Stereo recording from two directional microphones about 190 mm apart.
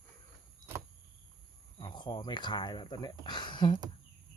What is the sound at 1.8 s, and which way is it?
Speech, 25° left (ahead or behind).